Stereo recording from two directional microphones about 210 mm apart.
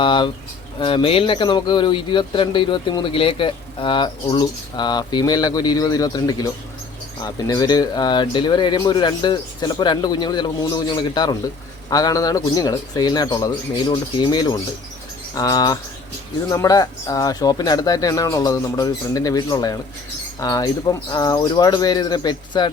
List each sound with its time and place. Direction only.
0.0 s speech: 20° left (ahead or behind)